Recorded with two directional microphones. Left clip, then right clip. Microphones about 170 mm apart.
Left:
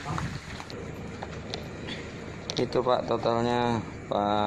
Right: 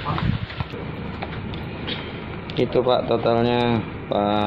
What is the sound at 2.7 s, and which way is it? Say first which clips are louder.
Speech: right 6 dB; 15° left (ahead or behind).